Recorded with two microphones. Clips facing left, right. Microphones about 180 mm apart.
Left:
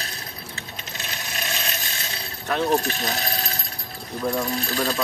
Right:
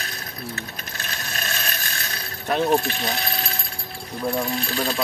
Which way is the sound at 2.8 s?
40° left (ahead or behind).